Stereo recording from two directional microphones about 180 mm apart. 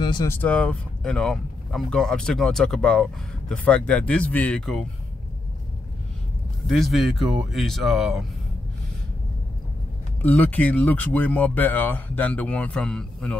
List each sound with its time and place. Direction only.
0.0 s speech: 20° left (ahead or behind)
0.4 s speech: 5° left (ahead or behind)
6.7 s speech: centre (ahead or behind)
10.2 s speech: 10° left (ahead or behind)